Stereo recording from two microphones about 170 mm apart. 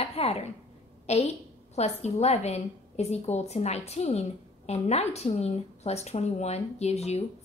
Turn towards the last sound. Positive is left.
turn(degrees=40)  # may be behind; listen again after turning